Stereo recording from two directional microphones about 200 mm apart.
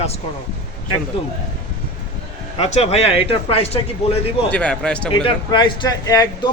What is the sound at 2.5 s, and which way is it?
Speech, 30° left (ahead or behind).